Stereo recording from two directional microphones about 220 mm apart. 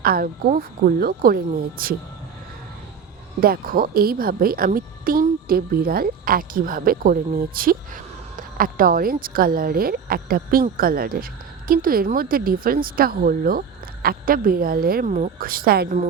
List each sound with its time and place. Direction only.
0.0 s a woman's voice: 40° right (ahead or behind)
3.4 s a woman's voice: 40° right (ahead or behind)